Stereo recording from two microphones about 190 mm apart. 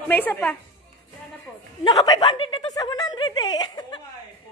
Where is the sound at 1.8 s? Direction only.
20° left (ahead or behind).